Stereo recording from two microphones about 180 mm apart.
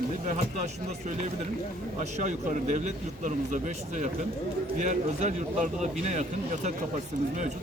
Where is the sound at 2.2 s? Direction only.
40° right (ahead or behind).